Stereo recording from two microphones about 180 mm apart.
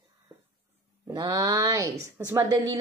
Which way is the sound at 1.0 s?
20° right (ahead or behind).